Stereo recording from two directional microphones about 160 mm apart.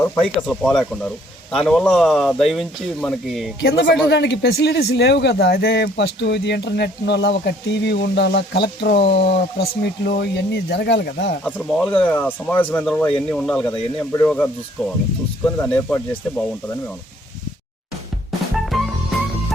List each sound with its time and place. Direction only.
0.3 s speech: centre (ahead or behind)
3.6 s speech: 90° left
11.4 s speech: 5° left (ahead or behind)
18.7 s music: centre (ahead or behind)